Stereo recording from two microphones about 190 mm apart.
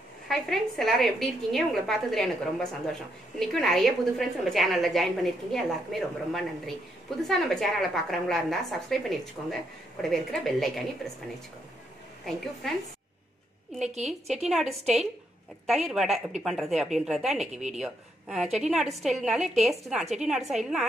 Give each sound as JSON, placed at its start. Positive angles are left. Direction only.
{"t": 0.3, "sound": "a woman's voice", "side_deg": 0}
{"t": 13.9, "sound": "a woman's voice", "side_deg": -35}
{"t": 14.5, "sound": "a woman's voice", "side_deg": 0}
{"t": 17.5, "sound": "a woman's voice", "side_deg": -35}
{"t": 17.7, "sound": "a woman's voice", "side_deg": 0}